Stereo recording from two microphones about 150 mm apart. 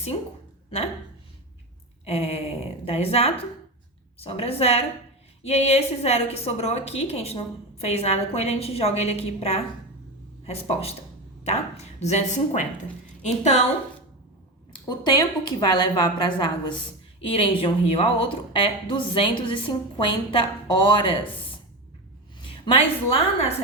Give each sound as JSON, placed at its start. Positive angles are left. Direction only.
{"t": 2.0, "sound": "a woman's voice", "side_deg": 45}
{"t": 14.7, "sound": "a woman's voice", "side_deg": 30}
{"t": 22.4, "sound": "a woman's voice", "side_deg": 35}